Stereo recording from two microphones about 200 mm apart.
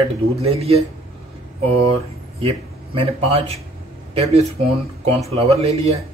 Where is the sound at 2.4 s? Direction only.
30° right (ahead or behind).